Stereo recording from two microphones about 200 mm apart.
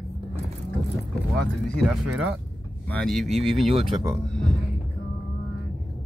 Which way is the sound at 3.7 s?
20° right (ahead or behind).